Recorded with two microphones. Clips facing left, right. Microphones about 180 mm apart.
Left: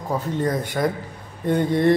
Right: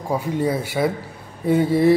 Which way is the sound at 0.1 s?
10° right (ahead or behind).